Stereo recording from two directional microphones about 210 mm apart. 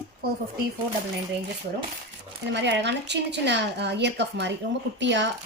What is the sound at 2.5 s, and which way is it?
A woman's voice, 55° right (ahead or behind).